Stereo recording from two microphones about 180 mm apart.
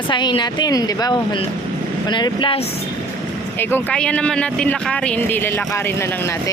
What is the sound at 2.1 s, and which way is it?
Speech, 25° left (ahead or behind).